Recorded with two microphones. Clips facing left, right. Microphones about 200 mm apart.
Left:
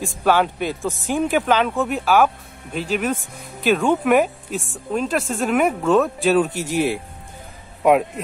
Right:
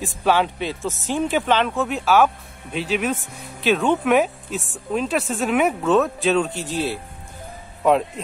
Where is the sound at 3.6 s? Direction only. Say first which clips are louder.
Left 1 dB; centre (ahead or behind).